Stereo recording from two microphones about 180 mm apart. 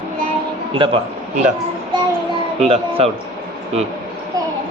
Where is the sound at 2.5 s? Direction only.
35° right (ahead or behind).